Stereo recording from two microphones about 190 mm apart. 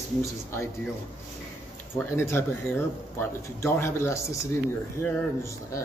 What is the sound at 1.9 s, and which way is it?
Speech, 15° left (ahead or behind).